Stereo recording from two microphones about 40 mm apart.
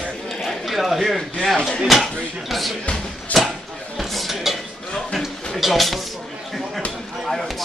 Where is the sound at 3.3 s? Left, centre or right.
Left.